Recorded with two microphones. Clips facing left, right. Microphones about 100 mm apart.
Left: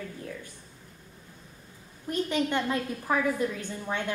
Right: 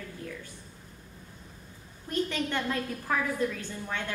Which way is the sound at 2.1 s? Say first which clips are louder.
Left 3 dB; 15° left (ahead or behind).